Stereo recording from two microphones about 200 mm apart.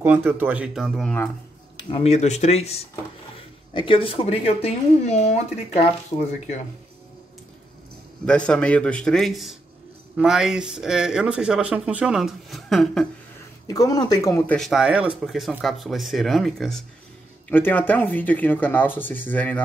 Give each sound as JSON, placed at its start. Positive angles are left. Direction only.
{"t": 0.0, "sound": "speech", "side_deg": -10}
{"t": 1.8, "sound": "speech", "side_deg": 25}
{"t": 8.3, "sound": "speech", "side_deg": 5}
{"t": 13.7, "sound": "speech", "side_deg": 20}